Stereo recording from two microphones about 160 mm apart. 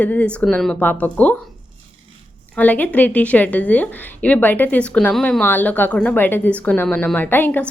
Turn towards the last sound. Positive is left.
turn(degrees=10)  # may be behind; listen again after turning